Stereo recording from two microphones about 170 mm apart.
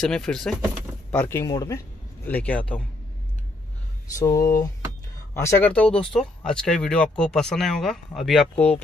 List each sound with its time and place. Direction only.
0.0 s speech: 5° left (ahead or behind)
1.1 s speech: 15° left (ahead or behind)
4.2 s speech: 20° left (ahead or behind); by 8.6 s centre (ahead or behind)